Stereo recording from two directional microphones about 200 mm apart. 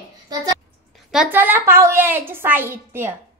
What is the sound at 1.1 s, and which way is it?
A woman's voice, 5° right (ahead or behind).